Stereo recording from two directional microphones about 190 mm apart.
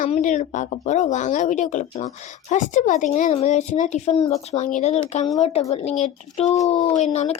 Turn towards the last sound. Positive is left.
turn(degrees=35)  # may be behind; listen again after turning